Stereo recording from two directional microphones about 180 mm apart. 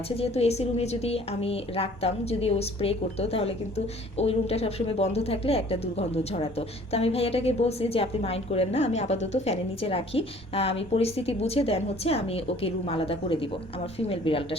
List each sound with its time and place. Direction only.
0.2 s a woman's voice: 35° left (ahead or behind)